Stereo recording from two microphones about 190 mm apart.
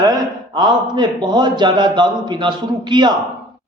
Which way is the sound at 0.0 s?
20° right (ahead or behind).